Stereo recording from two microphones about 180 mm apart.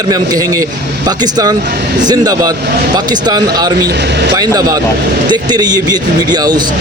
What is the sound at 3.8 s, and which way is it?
Speech, 70° right (ahead or behind).